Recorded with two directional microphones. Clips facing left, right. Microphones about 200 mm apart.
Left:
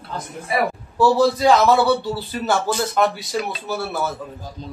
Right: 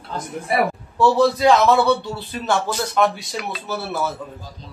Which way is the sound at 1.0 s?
Centre (ahead or behind).